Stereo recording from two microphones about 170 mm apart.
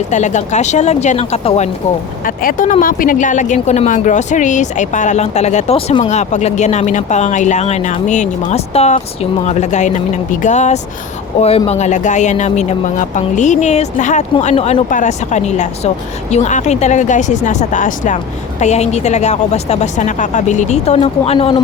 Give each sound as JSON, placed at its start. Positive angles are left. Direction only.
{"t": 0.1, "sound": "speech", "side_deg": 45}
{"t": 2.2, "sound": "speech", "side_deg": 55}
{"t": 6.1, "sound": "a woman's voice", "side_deg": 45}